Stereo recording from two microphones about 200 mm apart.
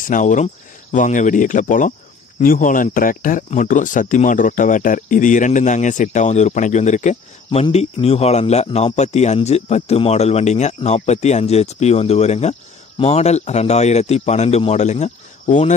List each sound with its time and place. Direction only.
0.1 s speech: 40° left (ahead or behind)